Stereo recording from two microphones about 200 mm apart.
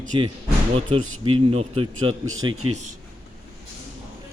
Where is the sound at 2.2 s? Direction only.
85° right.